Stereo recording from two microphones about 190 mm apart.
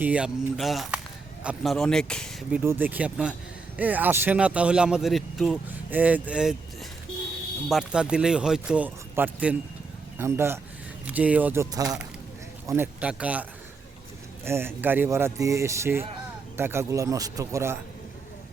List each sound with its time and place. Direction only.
0.0 s a man's voice: 5° right (ahead or behind)
2.5 s speech: 10° right (ahead or behind)
7.7 s a man's voice: 5° right (ahead or behind)
14.4 s speech: 10° right (ahead or behind)